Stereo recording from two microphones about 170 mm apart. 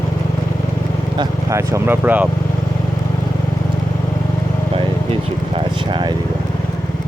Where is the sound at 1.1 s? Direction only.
20° right (ahead or behind).